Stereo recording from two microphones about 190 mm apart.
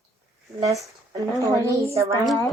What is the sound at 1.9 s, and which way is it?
Speech, 15° right (ahead or behind).